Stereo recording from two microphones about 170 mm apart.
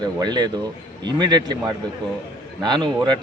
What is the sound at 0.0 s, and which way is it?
A man's voice, 25° right (ahead or behind).